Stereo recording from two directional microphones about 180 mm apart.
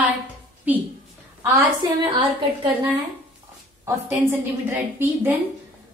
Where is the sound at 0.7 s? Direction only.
10° right (ahead or behind).